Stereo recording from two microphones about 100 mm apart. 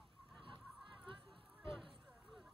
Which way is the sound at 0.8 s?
55° right (ahead or behind).